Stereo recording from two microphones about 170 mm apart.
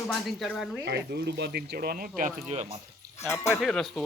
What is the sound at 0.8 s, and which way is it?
Speech, 75° right (ahead or behind).